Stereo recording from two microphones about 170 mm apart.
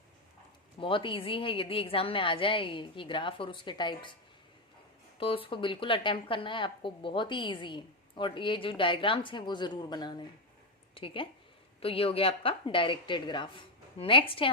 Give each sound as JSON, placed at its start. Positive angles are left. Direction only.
{"t": 0.8, "sound": "a woman's voice", "side_deg": 30}
{"t": 5.2, "sound": "a woman's voice", "side_deg": 30}